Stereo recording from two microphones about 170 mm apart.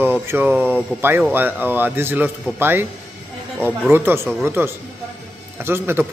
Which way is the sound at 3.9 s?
15° right (ahead or behind).